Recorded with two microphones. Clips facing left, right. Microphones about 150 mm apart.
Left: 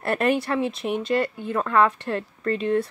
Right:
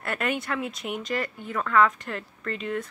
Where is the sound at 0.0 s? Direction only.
30° left (ahead or behind).